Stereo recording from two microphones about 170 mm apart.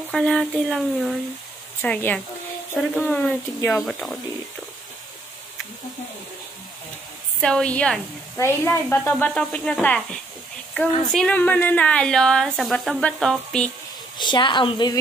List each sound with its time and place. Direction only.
0.1 s a woman's voice: 5° left (ahead or behind)
1.8 s a woman's voice: 10° left (ahead or behind)
7.3 s a woman's voice: 5° left (ahead or behind)
14.1 s speech: 25° left (ahead or behind)